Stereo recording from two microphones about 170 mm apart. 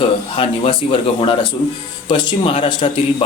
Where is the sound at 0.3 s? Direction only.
30° left (ahead or behind).